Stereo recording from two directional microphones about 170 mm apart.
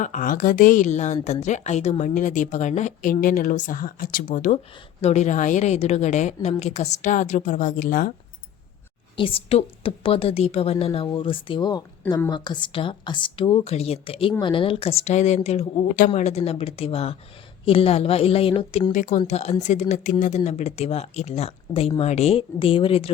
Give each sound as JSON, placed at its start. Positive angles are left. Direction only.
{"t": 0.0, "sound": "a woman's voice", "side_deg": 50}
{"t": 9.1, "sound": "speech", "side_deg": 30}
{"t": 18.9, "sound": "a woman's voice", "side_deg": 50}